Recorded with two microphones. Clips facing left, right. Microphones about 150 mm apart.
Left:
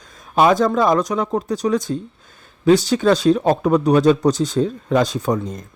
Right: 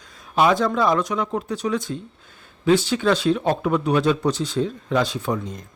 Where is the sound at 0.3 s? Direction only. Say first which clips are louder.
Left 4 dB; 45° left (ahead or behind).